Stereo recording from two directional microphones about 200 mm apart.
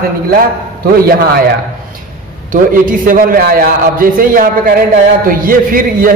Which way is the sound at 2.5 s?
45° right (ahead or behind).